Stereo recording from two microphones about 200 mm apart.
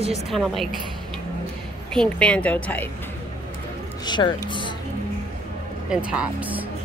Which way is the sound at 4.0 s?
20° left (ahead or behind).